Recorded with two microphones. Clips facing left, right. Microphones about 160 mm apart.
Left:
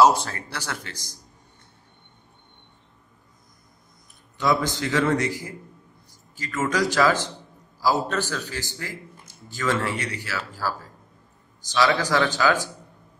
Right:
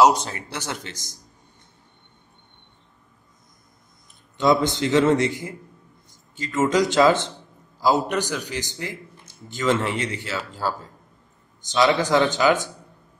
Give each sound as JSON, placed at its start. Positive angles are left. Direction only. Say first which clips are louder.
{"t": 0.0, "sound": "a man's voice", "louder": "right 1 dB", "side_deg": -20}
{"t": 4.4, "sound": "a man's voice", "louder": "right 4 dB", "side_deg": -25}